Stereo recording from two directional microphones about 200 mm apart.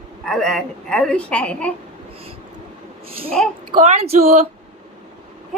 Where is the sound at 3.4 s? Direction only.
5° left (ahead or behind).